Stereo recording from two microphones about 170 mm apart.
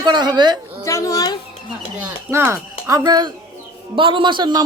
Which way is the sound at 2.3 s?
15° right (ahead or behind).